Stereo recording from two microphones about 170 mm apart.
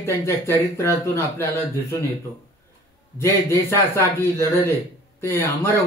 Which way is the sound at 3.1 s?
15° left (ahead or behind).